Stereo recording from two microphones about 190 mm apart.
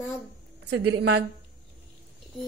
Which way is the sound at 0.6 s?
65° right (ahead or behind).